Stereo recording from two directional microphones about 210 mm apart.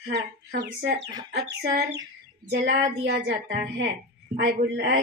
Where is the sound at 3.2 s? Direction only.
55° right (ahead or behind).